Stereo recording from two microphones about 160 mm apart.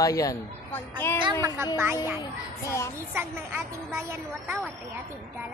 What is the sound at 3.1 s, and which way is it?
Speech, 15° right (ahead or behind).